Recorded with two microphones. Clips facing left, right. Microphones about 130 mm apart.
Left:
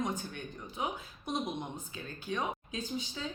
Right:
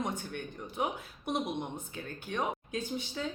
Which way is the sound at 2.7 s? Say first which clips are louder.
Right 2 dB; 60° right (ahead or behind).